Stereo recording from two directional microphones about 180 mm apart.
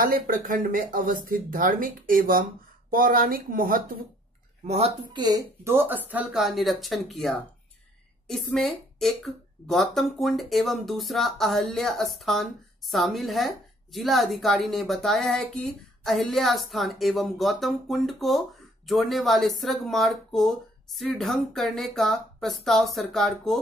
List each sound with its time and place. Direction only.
0.0 s speech: 50° right (ahead or behind)
4.6 s speech: 35° right (ahead or behind)
5.6 s a woman's voice: 15° right (ahead or behind)